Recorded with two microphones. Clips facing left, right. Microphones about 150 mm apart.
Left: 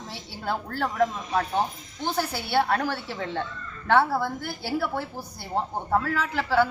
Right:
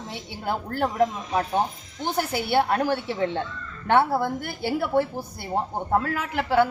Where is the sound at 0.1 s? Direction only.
20° right (ahead or behind).